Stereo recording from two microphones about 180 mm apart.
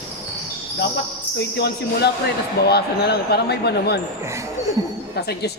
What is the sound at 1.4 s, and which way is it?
Speech, 65° left (ahead or behind).